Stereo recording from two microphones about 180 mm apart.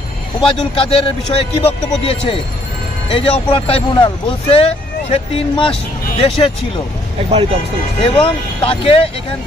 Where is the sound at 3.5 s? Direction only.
35° left (ahead or behind).